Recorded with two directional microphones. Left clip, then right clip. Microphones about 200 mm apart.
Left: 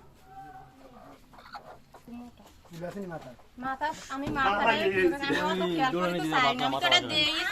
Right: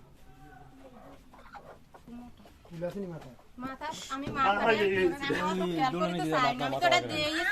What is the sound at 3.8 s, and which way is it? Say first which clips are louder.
Speech: left 1 dB; 35° right (ahead or behind).